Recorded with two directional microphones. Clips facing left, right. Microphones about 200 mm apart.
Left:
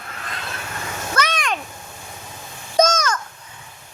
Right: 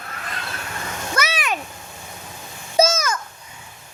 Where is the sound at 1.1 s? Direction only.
5° right (ahead or behind).